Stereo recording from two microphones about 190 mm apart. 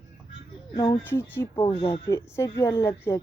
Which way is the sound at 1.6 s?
30° left (ahead or behind).